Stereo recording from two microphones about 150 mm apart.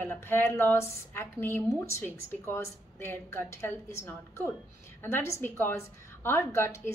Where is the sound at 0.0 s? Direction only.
15° left (ahead or behind).